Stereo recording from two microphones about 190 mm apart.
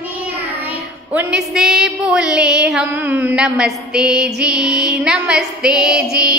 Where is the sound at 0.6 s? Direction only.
10° right (ahead or behind).